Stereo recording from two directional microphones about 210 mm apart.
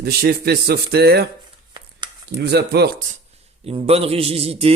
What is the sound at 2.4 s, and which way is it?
Speech, 50° right (ahead or behind).